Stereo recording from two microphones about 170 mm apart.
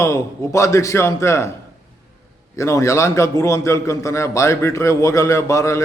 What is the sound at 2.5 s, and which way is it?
A man's voice, 15° left (ahead or behind).